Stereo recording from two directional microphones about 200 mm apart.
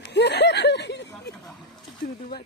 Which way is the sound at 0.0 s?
60° left (ahead or behind).